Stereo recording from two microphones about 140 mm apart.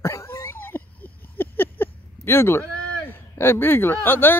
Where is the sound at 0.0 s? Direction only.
20° left (ahead or behind).